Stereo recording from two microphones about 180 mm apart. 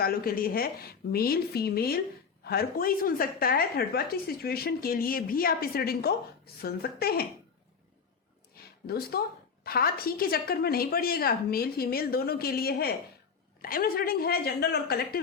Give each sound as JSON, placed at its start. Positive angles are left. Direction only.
{"t": 0.0, "sound": "a woman's voice", "side_deg": 55}
{"t": 8.9, "sound": "a woman's voice", "side_deg": 60}